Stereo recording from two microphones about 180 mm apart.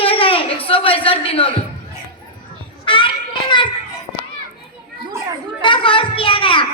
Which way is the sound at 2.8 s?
30° left (ahead or behind).